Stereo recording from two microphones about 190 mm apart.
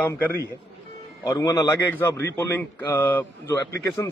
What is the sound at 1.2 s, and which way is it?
A man's voice, 20° left (ahead or behind).